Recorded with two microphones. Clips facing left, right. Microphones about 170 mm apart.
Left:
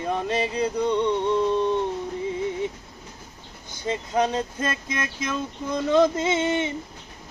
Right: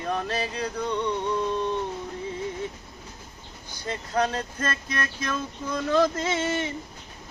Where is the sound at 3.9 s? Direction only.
15° left (ahead or behind).